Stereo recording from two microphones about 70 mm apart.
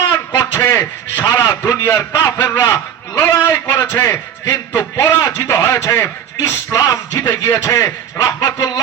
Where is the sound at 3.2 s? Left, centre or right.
Left.